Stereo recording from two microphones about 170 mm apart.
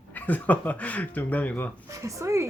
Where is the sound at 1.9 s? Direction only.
20° right (ahead or behind).